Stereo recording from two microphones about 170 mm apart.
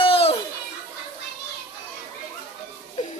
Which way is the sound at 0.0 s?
35° left (ahead or behind).